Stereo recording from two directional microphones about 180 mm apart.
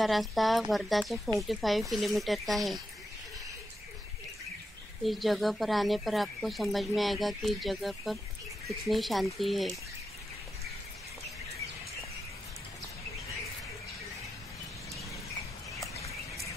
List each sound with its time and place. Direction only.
0.0 s speech: centre (ahead or behind)
5.0 s speech: centre (ahead or behind)
15.9 s a sound: 35° left (ahead or behind)